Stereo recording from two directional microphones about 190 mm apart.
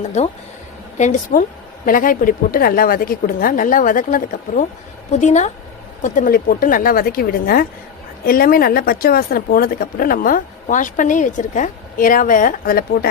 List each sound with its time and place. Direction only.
0.2 s a woman's voice: 35° left (ahead or behind); by 13.1 s 50° left (ahead or behind)